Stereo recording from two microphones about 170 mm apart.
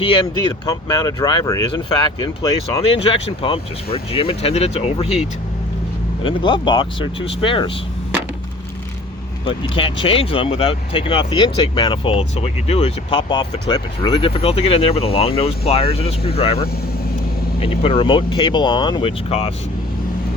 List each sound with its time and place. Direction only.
0.0 s speech: 30° left (ahead or behind)
2.8 s speech: 35° left (ahead or behind)
6.2 s speech: 30° left (ahead or behind)
9.5 s speech: 30° left (ahead or behind)
17.6 s speech: 35° left (ahead or behind)